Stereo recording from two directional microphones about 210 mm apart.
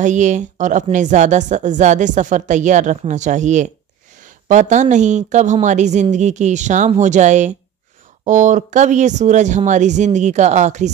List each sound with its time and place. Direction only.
0.0 s a woman's voice: 35° right (ahead or behind)